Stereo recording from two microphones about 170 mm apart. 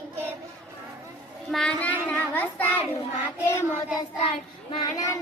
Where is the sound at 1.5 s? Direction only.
5° left (ahead or behind).